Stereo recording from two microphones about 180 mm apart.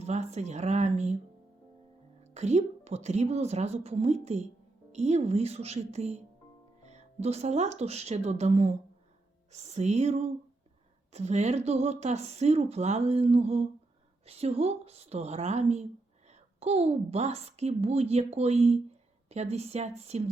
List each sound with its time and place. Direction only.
0.0 s speech: 40° right (ahead or behind)
2.2 s speech: 40° right (ahead or behind)